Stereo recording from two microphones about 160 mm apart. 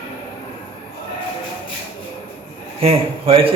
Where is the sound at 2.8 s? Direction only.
35° right (ahead or behind).